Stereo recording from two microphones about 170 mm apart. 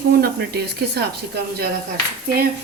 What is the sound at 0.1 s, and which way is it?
Speech, 70° right (ahead or behind).